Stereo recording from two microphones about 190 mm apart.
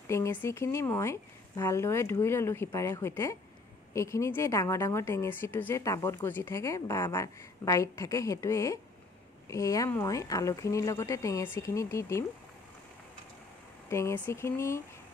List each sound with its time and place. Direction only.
0.1 s a woman's voice: 15° left (ahead or behind)
13.8 s a woman's voice: 15° left (ahead or behind)